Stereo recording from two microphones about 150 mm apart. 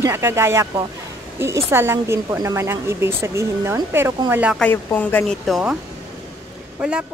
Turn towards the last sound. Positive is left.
turn(degrees=-5)  # may be behind; listen again after turning